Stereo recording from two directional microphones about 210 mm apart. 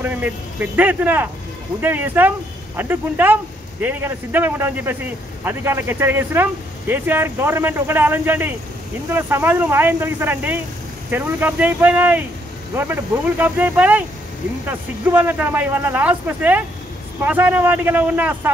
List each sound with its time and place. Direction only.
0.0 s speech: 10° right (ahead or behind)